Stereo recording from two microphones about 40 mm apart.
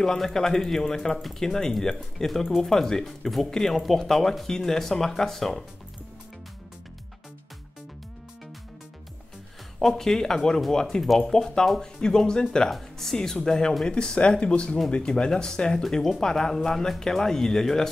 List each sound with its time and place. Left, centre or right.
0.0 s speech: centre
3.7 s speech: centre
9.8 s speech: centre
12.7 s speech: centre
15.8 s speech: centre